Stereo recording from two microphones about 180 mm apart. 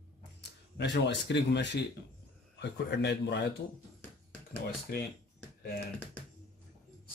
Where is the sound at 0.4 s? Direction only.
70° left (ahead or behind).